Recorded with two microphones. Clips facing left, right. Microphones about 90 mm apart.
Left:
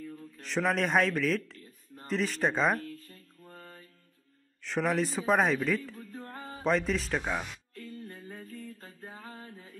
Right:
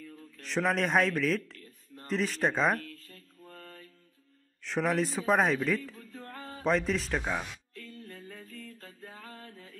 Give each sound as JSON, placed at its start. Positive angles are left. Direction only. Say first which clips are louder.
{"t": 0.1, "sound": "speech", "louder": "right 1 dB", "side_deg": 0}
{"t": 2.8, "sound": "mantra", "louder": "left 4 dB", "side_deg": 15}
{"t": 4.6, "sound": "a man's voice", "louder": "even", "side_deg": 0}
{"t": 6.2, "sound": "music", "louder": "even", "side_deg": 5}
{"t": 8.5, "sound": "music", "louder": "left 2 dB", "side_deg": 10}
{"t": 9.1, "sound": "mantra", "louder": "left 2 dB", "side_deg": 15}